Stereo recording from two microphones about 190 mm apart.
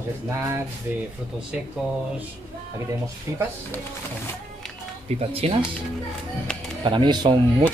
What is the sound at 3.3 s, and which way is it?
Speech, 15° right (ahead or behind).